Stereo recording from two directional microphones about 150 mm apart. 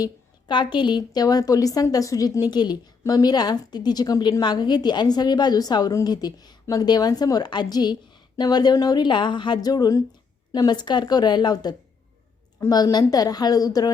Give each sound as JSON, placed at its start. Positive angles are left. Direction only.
{"t": 0.0, "sound": "a woman's voice", "side_deg": 30}